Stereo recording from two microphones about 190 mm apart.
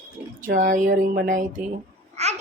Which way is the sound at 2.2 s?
35° right (ahead or behind).